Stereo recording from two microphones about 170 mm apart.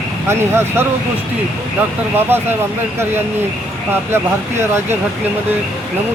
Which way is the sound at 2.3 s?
15° right (ahead or behind).